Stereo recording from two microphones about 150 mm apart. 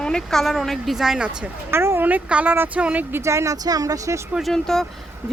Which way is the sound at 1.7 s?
15° right (ahead or behind).